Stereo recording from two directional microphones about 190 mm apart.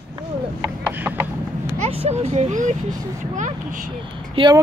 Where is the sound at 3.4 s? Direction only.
40° right (ahead or behind).